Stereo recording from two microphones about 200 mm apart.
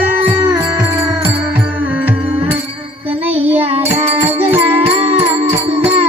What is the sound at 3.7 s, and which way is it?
Music, 30° right (ahead or behind).